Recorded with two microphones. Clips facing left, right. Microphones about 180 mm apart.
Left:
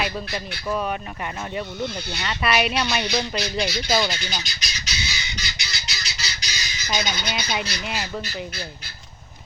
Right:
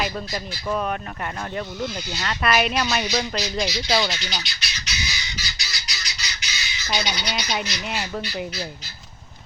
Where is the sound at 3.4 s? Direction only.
55° left (ahead or behind).